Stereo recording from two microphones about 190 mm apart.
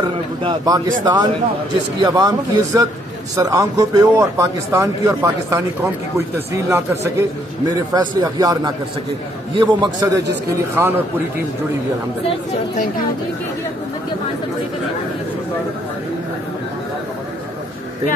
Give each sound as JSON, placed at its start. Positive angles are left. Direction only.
{"t": 0.4, "sound": "speech", "side_deg": -25}